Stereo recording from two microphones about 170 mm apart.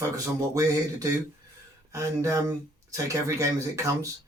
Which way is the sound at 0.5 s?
20° right (ahead or behind).